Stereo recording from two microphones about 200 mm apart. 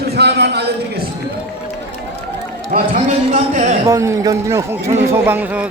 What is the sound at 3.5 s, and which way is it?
Speech, 35° right (ahead or behind).